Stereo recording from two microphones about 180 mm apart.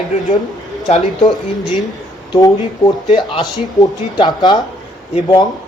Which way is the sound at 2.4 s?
25° left (ahead or behind).